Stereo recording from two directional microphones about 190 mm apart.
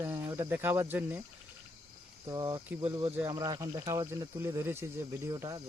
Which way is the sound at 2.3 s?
25° right (ahead or behind).